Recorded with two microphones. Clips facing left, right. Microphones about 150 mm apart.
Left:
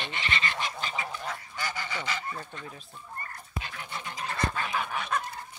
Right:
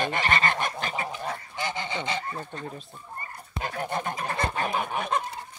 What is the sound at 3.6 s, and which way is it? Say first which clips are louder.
Goose: right 11 dB; 45° right (ahead or behind).